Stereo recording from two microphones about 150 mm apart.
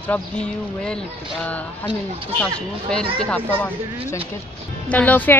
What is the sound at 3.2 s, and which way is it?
Speech, 10° left (ahead or behind).